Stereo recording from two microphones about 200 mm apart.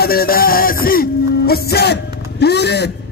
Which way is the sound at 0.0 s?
50° left (ahead or behind).